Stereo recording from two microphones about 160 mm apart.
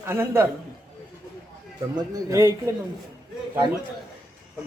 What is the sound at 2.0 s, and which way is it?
Speech, 20° right (ahead or behind).